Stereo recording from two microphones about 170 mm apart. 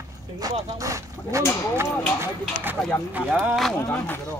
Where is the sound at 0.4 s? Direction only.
20° right (ahead or behind); by 3.7 s centre (ahead or behind).